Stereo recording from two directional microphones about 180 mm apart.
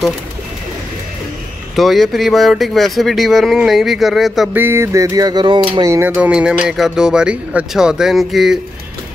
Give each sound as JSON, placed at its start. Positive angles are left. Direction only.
{"t": 1.8, "sound": "speech", "side_deg": 0}
{"t": 4.6, "sound": "music", "side_deg": -15}
{"t": 5.9, "sound": "speech", "side_deg": -10}